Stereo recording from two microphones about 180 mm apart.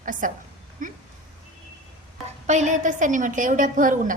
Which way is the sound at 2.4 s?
40° right (ahead or behind).